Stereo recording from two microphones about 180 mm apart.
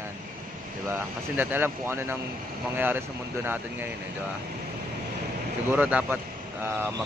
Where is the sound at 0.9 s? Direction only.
10° right (ahead or behind).